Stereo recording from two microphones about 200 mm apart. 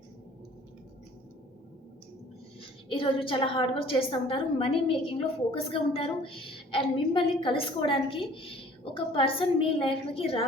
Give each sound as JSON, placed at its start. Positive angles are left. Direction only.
{"t": 2.9, "sound": "a woman's voice", "side_deg": 25}